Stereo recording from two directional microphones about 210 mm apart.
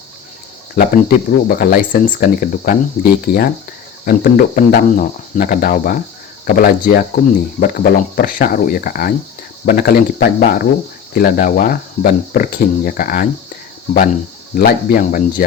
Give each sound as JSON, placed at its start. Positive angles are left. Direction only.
{"t": 0.8, "sound": "speech", "side_deg": 45}
{"t": 14.5, "sound": "speech", "side_deg": 45}